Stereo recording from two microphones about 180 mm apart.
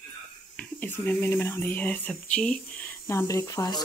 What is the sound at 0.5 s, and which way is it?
Speech, 10° left (ahead or behind).